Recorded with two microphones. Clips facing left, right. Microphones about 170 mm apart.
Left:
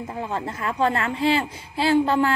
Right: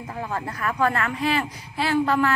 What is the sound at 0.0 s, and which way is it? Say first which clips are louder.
Speech: left 2 dB; 25° left (ahead or behind).